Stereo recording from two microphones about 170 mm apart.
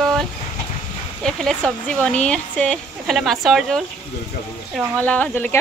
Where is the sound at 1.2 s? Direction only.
5° left (ahead or behind).